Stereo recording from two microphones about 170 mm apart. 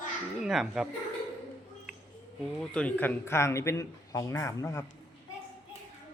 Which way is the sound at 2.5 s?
5° left (ahead or behind).